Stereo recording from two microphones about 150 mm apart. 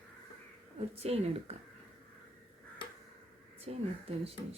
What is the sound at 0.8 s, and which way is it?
Speech, 40° right (ahead or behind).